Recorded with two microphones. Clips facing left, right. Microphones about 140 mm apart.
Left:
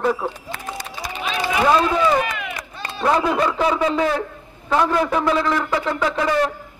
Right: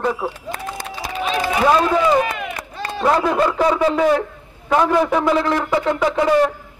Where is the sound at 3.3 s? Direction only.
5° right (ahead or behind).